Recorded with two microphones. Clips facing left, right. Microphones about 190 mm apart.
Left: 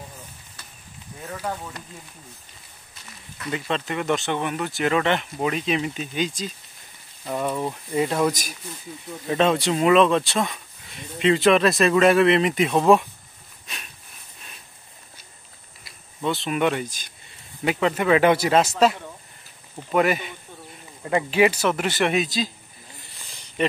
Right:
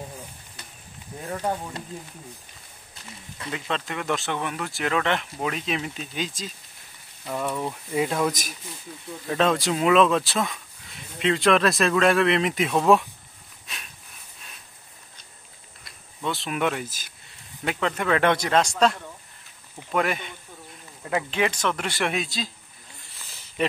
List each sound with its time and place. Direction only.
1.3 s speech: 20° right (ahead or behind)
3.5 s speech: centre (ahead or behind)
15.8 s speech: centre (ahead or behind)
17.6 s speech: 5° left (ahead or behind)
23.1 s a sound: centre (ahead or behind)